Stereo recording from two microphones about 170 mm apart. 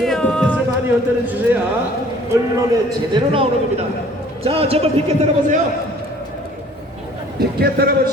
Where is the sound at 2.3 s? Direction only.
15° right (ahead or behind).